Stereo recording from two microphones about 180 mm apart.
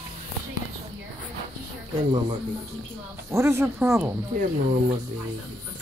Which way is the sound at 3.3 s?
15° right (ahead or behind).